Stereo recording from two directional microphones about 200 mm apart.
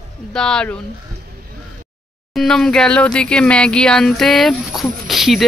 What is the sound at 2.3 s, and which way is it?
Speech, 5° left (ahead or behind).